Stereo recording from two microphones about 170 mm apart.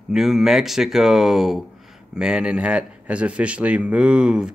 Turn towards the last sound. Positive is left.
turn(degrees=-5)  # may be behind; listen again after turning